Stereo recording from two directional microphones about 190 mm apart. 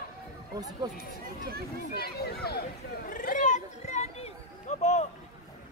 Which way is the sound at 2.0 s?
55° left (ahead or behind).